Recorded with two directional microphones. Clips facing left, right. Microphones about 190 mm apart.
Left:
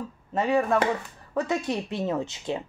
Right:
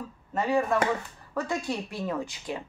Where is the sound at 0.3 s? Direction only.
20° left (ahead or behind).